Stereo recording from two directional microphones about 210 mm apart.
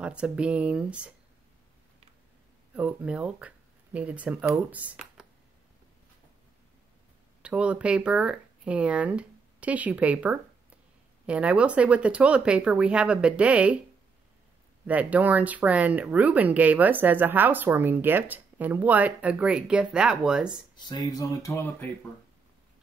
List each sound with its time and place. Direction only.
0.0 s speech: 5° right (ahead or behind)
2.7 s speech: 5° right (ahead or behind)
7.4 s speech: 5° right (ahead or behind)
14.9 s speech: 5° right (ahead or behind)
20.7 s speech: 20° left (ahead or behind)